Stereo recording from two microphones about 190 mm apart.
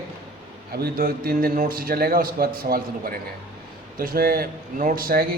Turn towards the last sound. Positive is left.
turn(degrees=-50)  # may be behind; listen again after turning